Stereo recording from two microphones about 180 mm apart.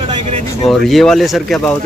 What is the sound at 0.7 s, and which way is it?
Speech, centre (ahead or behind).